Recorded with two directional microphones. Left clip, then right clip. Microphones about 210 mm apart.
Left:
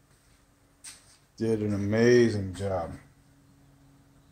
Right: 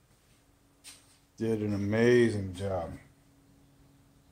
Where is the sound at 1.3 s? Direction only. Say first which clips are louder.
Left 3 dB; centre (ahead or behind).